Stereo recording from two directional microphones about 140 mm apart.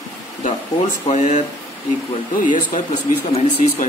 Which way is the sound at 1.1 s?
60° left (ahead or behind).